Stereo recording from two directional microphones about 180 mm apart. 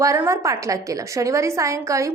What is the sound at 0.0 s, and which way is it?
A woman's voice, 15° right (ahead or behind).